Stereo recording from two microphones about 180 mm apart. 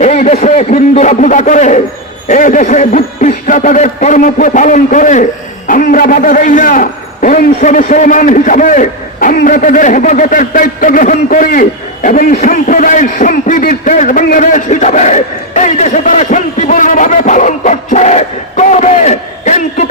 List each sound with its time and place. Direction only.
0.0 s a man's voice: 40° left (ahead or behind)